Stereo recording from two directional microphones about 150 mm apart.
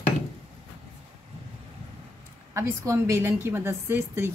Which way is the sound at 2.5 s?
20° right (ahead or behind).